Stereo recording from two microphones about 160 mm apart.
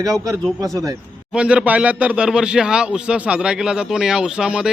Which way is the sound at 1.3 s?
5° right (ahead or behind).